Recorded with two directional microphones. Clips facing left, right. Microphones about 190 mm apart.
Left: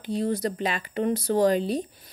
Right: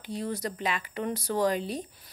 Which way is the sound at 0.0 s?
30° left (ahead or behind).